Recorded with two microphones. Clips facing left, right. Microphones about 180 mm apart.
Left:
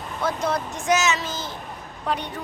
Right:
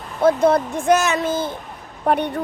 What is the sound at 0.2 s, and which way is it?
Speech, 55° right (ahead or behind).